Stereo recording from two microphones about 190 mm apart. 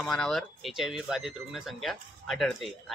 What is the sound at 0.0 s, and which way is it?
Speech, centre (ahead or behind).